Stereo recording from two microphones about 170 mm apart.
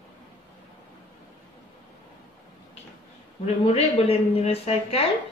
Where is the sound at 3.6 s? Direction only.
35° left (ahead or behind).